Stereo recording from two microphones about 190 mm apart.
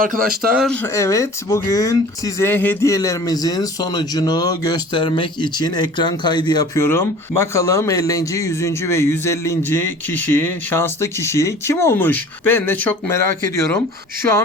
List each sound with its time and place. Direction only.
0.0 s speech: 50° right (ahead or behind)
0.5 s speech: 5° left (ahead or behind)
0.9 s speech: 15° left (ahead or behind)